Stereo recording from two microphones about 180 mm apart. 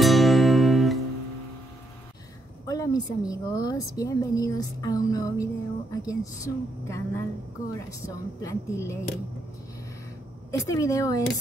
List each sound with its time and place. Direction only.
0.0 s music: centre (ahead or behind)
2.6 s a sound: 20° left (ahead or behind)
3.3 s a woman's voice: 20° left (ahead or behind)
10.7 s a woman's voice: 20° left (ahead or behind)